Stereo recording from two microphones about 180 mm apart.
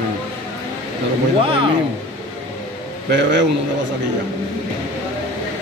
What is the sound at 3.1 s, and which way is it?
Speech, 80° right.